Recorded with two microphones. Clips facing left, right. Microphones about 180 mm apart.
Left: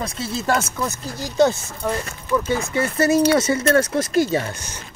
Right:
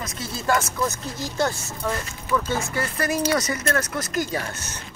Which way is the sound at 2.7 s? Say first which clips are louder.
Left 11 dB; 25° left (ahead or behind).